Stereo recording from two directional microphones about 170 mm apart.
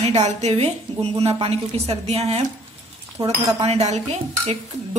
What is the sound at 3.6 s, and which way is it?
Speech, 40° right (ahead or behind).